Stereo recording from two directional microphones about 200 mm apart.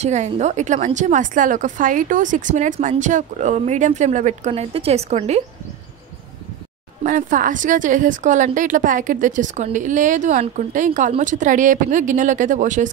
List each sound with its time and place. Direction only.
0.0 s a woman's voice: 35° right (ahead or behind)
7.0 s a woman's voice: 40° right (ahead or behind)